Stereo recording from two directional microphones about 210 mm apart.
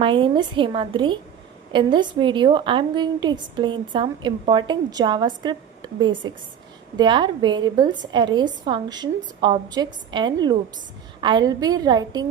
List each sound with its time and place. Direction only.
0.0 s a woman's voice: 20° right (ahead or behind)